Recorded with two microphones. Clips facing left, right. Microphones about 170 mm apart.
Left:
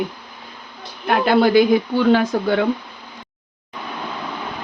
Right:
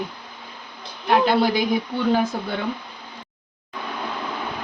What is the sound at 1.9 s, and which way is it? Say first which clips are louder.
Speech: left 5 dB; 90° left.